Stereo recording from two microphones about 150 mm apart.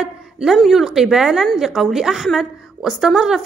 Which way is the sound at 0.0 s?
5° right (ahead or behind).